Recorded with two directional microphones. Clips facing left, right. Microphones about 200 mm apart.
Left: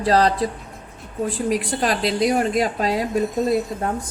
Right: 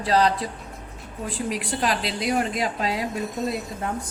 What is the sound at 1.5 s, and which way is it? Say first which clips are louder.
A woman's voice: left 3 dB; 45° left (ahead or behind).